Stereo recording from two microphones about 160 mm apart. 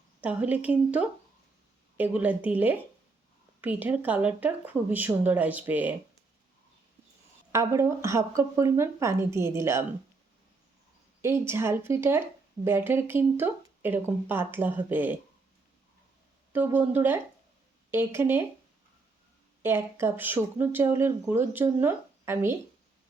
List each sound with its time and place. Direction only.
0.2 s speech: 10° right (ahead or behind)
7.5 s speech: 20° right (ahead or behind)
11.2 s speech: 15° right (ahead or behind)
16.5 s speech: 15° right (ahead or behind)
19.6 s speech: 15° right (ahead or behind)